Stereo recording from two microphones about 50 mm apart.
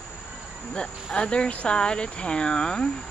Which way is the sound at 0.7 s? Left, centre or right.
Centre.